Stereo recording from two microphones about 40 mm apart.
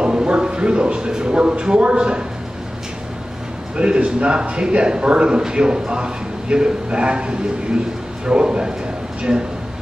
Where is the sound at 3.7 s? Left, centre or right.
Right.